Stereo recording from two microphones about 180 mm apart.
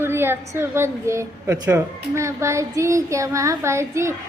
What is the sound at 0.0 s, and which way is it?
A child's voice, 15° right (ahead or behind).